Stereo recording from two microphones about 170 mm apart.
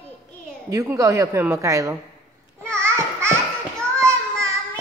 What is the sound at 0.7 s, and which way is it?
A woman's voice, 20° right (ahead or behind).